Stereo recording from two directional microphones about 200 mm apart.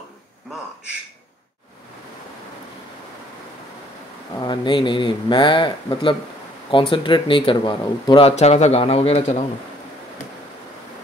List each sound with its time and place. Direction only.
4.4 s speech: 20° left (ahead or behind)